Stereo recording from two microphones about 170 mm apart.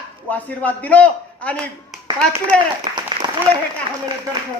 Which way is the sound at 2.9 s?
30° right (ahead or behind).